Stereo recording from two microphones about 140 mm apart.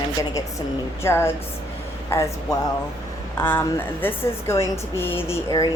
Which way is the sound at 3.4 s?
15° left (ahead or behind).